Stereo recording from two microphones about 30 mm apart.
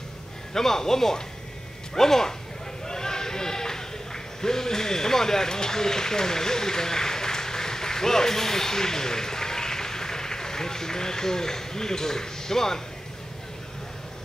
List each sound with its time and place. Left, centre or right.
0.5 s speech: centre
2.9 s bleat: centre